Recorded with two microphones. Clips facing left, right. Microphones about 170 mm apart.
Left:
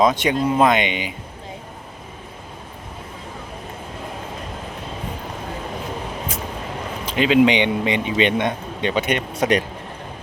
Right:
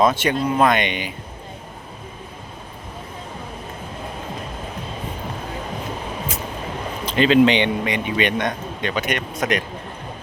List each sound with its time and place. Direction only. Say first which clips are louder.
0.0 s speech: left 1 dB; 15° left (ahead or behind)
7.0 s speech: right 1 dB; 10° left (ahead or behind)
7.9 s a man's voice: left 2 dB; 25° left (ahead or behind)